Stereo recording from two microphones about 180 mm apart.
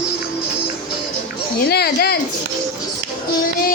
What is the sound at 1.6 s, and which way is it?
Speech, 60° left (ahead or behind).